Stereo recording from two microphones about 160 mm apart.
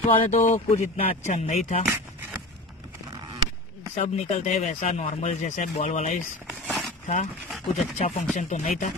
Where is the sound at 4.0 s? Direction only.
45° left (ahead or behind).